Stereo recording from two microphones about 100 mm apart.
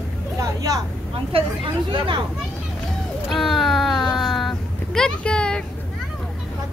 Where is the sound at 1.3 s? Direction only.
70° right (ahead or behind).